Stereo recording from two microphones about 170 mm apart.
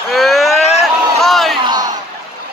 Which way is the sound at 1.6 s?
25° right (ahead or behind).